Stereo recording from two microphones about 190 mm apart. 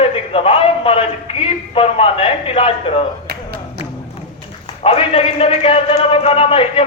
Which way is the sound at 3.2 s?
55° right (ahead or behind).